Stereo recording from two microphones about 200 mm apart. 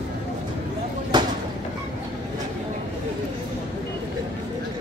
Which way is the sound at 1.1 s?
20° right (ahead or behind).